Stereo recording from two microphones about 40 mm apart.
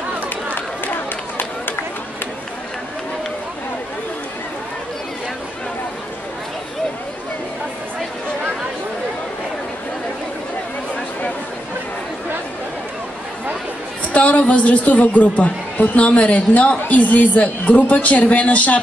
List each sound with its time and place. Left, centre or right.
14.0 s a woman's voice: left